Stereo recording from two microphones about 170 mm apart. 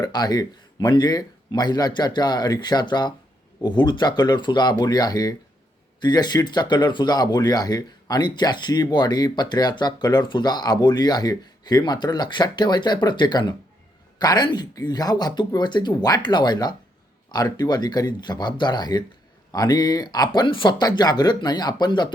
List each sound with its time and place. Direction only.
0.0 s speech: 25° left (ahead or behind)